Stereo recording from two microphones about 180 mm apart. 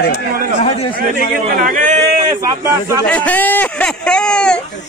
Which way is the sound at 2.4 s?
15° right (ahead or behind).